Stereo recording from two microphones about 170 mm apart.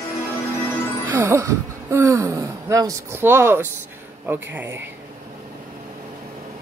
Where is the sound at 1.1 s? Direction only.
20° right (ahead or behind).